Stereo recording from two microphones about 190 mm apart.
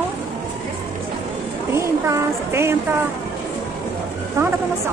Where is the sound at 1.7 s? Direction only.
15° right (ahead or behind).